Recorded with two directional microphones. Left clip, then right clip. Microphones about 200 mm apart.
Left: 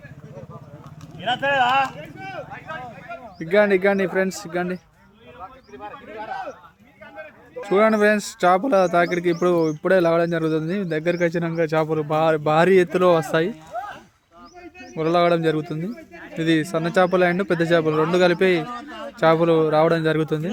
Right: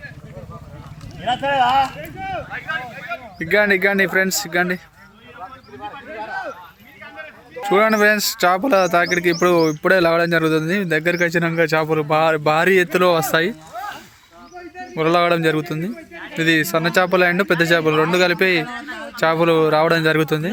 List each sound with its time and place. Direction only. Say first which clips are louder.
1.2 s speech: right 2 dB; 15° left (ahead or behind)
2.0 s a sound: right 6 dB; 55° left (ahead or behind)
3.3 s speech: right 1 dB; centre (ahead or behind)
7.5 s speech: right 2 dB; 5° left (ahead or behind)
14.9 s speech: right 2 dB; 5° left (ahead or behind)